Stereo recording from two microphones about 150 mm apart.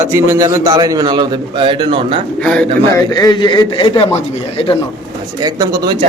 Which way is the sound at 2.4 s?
5° left (ahead or behind).